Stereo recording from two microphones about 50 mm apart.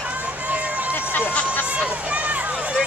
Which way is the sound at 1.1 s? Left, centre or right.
Left.